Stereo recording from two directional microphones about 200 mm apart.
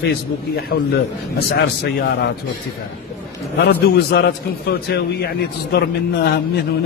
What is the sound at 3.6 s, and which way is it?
A man's voice, 55° left (ahead or behind).